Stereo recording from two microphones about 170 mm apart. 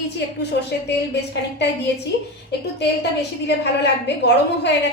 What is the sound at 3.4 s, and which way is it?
Speech, 90° left.